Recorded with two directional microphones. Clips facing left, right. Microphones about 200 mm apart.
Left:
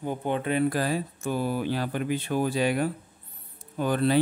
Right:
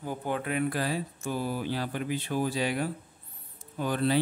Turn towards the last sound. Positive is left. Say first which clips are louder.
# left 3 dB
turn(degrees=55)  # may be behind; listen again after turning